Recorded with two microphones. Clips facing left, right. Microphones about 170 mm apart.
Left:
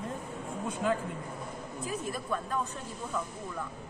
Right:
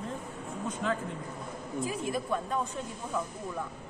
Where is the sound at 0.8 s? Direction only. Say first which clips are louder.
Left 2 dB; 10° left (ahead or behind).